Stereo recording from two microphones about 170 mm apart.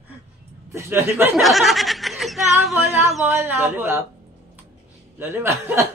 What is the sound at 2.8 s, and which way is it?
Speech, 15° right (ahead or behind).